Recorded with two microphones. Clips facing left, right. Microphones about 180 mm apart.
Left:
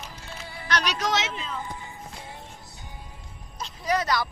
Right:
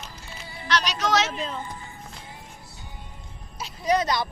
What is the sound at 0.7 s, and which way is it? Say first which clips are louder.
Speech: right 1 dB; 55° left (ahead or behind).